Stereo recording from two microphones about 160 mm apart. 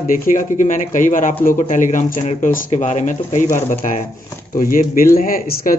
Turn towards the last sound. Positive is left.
turn(degrees=65)  # may be behind; listen again after turning